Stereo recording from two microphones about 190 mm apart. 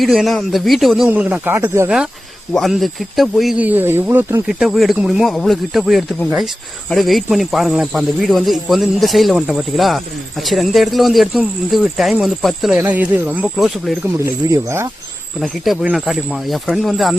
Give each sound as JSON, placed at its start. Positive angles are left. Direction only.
{"t": 0.0, "sound": "speech", "side_deg": 0}
{"t": 2.5, "sound": "speech", "side_deg": 0}
{"t": 4.4, "sound": "speech", "side_deg": 0}
{"t": 14.3, "sound": "speech", "side_deg": -15}
{"t": 15.4, "sound": "speech", "side_deg": 0}